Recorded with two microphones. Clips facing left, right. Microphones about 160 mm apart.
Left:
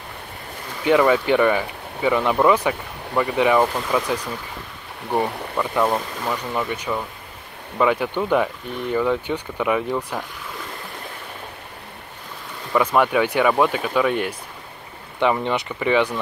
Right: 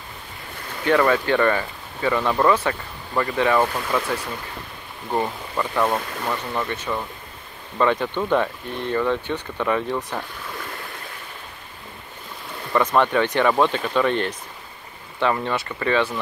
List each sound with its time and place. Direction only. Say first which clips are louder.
0.8 s speech: left 2 dB; 15° left (ahead or behind)
5.1 s speech: left 2 dB; 5° left (ahead or behind)
12.7 s speech: left 1 dB; 10° left (ahead or behind)